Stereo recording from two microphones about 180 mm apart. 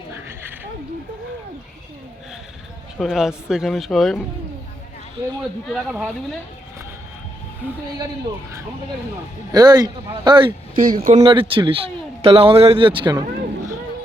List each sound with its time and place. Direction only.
0.1 s a sound: 10° right (ahead or behind)
3.0 s speech: centre (ahead or behind)
5.7 s speech: centre (ahead or behind)
9.5 s speech: 20° right (ahead or behind)
10.9 s speech: 40° right (ahead or behind)
11.2 s speech: 30° right (ahead or behind)